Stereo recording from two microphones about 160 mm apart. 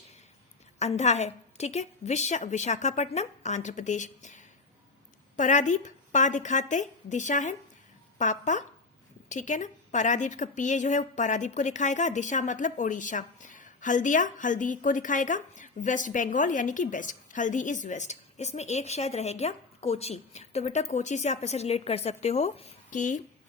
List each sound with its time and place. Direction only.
0.8 s a woman's voice: 45° left (ahead or behind)